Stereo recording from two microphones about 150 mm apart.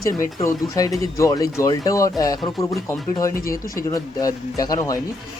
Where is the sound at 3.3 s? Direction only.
70° left (ahead or behind).